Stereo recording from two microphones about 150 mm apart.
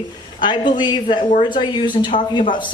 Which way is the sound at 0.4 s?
30° left (ahead or behind).